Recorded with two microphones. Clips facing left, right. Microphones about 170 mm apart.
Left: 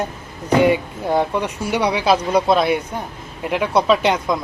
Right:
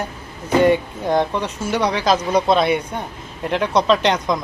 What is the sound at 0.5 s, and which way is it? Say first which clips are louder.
Speech: right 1 dB; 10° left (ahead or behind).